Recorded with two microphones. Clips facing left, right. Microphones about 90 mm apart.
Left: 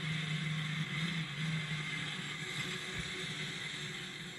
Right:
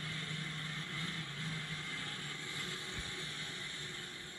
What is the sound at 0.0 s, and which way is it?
Vehicle, 30° right (ahead or behind).